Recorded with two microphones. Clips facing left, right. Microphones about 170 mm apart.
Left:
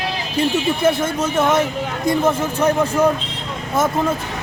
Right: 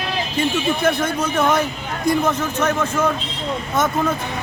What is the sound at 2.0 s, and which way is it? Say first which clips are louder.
Speech: left 1 dB; 25° left (ahead or behind).